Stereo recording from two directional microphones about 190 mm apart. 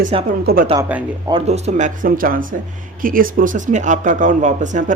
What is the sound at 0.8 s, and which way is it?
Speech, 10° right (ahead or behind).